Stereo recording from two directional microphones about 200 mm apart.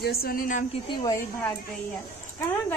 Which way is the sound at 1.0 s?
15° left (ahead or behind).